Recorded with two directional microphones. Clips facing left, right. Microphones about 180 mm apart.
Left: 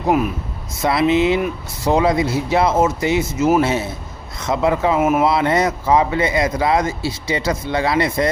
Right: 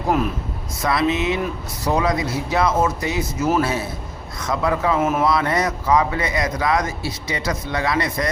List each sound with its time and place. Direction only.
0.1 s speech: 10° left (ahead or behind)
0.8 s a man's voice: 25° left (ahead or behind)
4.9 s speech: 10° left (ahead or behind)
5.2 s a man's voice: 25° left (ahead or behind)